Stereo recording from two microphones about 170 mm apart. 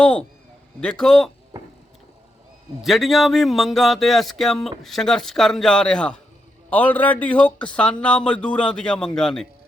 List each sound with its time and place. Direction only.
0.0 s speech: 5° left (ahead or behind)
1.5 s a sound: 20° right (ahead or behind)
2.8 s speech: centre (ahead or behind)